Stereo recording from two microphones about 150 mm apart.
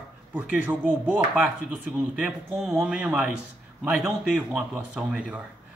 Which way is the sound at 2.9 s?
5° right (ahead or behind).